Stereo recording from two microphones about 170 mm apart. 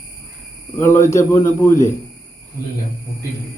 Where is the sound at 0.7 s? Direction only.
15° left (ahead or behind).